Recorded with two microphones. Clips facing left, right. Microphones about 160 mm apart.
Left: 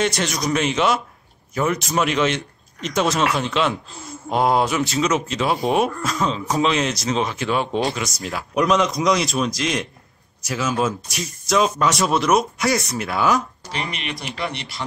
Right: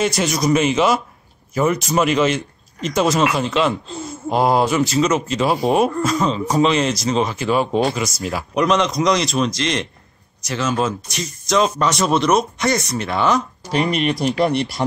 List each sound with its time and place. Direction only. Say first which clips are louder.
0.0 s speech: right 3 dB; centre (ahead or behind)
13.7 s speech: right 10 dB; 45° right (ahead or behind)